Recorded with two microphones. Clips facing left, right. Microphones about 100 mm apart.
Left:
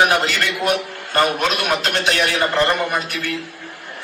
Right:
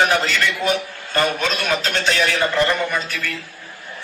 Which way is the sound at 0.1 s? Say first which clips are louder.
Even; 55° left (ahead or behind).